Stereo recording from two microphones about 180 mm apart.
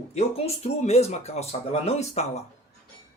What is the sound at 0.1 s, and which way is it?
Speech, 35° left (ahead or behind).